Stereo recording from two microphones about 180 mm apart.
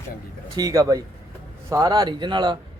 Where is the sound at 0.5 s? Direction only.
20° right (ahead or behind).